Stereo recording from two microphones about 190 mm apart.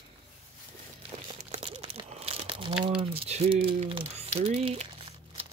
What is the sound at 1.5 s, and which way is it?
Crumpling, 30° right (ahead or behind).